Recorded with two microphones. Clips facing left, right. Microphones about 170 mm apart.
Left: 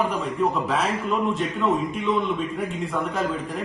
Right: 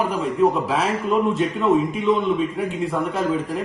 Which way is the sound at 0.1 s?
Centre (ahead or behind).